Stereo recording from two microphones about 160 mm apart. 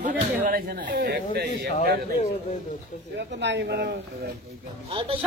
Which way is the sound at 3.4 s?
90° right.